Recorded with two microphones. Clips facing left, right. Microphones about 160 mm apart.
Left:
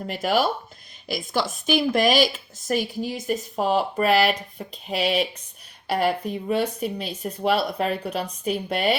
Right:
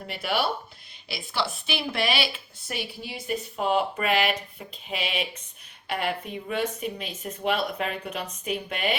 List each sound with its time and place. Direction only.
0.1 s speech: 40° left (ahead or behind)